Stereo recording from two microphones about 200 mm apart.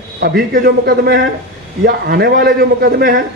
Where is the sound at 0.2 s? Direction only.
50° right (ahead or behind).